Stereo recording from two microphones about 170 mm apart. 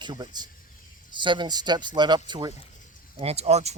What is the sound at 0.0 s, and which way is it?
Speech, 25° right (ahead or behind).